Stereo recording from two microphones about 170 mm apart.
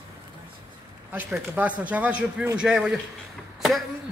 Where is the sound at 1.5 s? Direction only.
10° right (ahead or behind).